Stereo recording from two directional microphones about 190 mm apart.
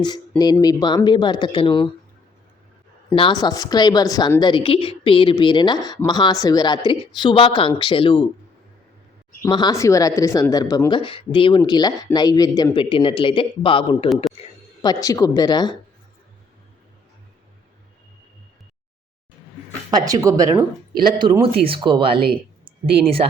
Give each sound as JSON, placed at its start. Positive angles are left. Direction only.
{"t": 0.0, "sound": "speech", "side_deg": 20}
{"t": 3.1, "sound": "speech", "side_deg": 25}
{"t": 9.4, "sound": "speech", "side_deg": 20}
{"t": 19.9, "sound": "speech", "side_deg": -20}
{"t": 22.6, "sound": "a sound", "side_deg": -30}